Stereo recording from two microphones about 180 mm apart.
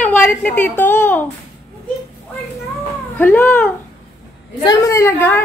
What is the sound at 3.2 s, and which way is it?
A woman's voice, 10° left (ahead or behind).